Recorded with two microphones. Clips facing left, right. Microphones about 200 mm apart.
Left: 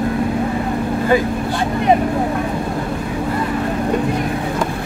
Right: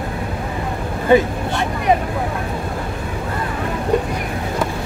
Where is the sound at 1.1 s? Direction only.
25° right (ahead or behind).